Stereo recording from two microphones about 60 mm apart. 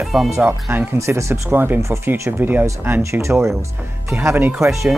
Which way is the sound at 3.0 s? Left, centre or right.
Right.